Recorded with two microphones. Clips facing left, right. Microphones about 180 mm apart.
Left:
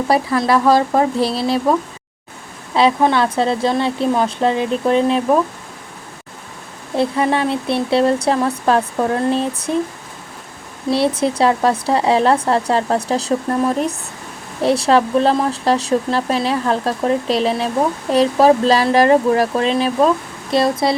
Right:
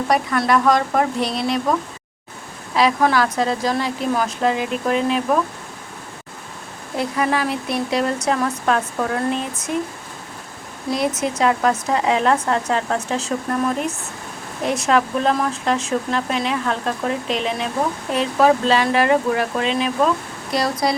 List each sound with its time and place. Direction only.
0.1 s speech: 30° left (ahead or behind)
2.7 s speech: 25° left (ahead or behind)
6.9 s speech: 30° left (ahead or behind)
10.9 s speech: 30° left (ahead or behind)
20.5 s speech: 25° left (ahead or behind)